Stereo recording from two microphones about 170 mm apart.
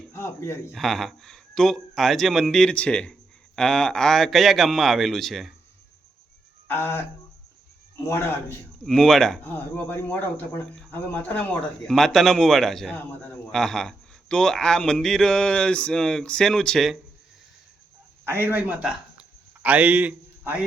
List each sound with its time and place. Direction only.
0.1 s a sound: 15° left (ahead or behind)
0.7 s speech: centre (ahead or behind)
6.7 s speech: 10° left (ahead or behind)
8.0 s speech: 15° left (ahead or behind)
8.8 s speech: centre (ahead or behind)
18.3 s a man's voice: 10° right (ahead or behind)